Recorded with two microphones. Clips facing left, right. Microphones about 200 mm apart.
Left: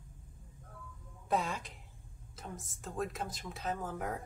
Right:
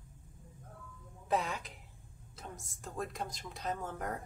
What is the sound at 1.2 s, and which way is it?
Speech, centre (ahead or behind).